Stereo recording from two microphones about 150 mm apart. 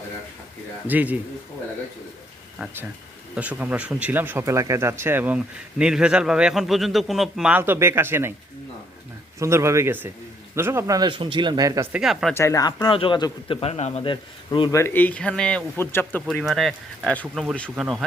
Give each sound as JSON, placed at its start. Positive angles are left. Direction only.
{"t": 0.9, "sound": "a man's voice", "side_deg": -10}
{"t": 3.3, "sound": "a man's voice", "side_deg": -10}
{"t": 9.4, "sound": "speech", "side_deg": -20}
{"t": 11.9, "sound": "speech", "side_deg": -5}
{"t": 12.3, "sound": "speech", "side_deg": 20}
{"t": 12.9, "sound": "a man's voice", "side_deg": 35}
{"t": 14.0, "sound": "a man's voice", "side_deg": 35}
{"t": 14.7, "sound": "speech", "side_deg": 20}
{"t": 16.2, "sound": "speech", "side_deg": 0}